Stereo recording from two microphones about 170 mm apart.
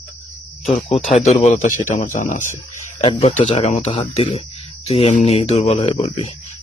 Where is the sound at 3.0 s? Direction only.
30° left (ahead or behind).